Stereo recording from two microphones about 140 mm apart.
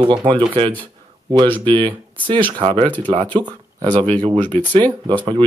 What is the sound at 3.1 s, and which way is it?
Speech, 40° right (ahead or behind).